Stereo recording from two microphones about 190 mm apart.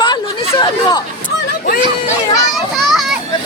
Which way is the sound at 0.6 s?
20° left (ahead or behind).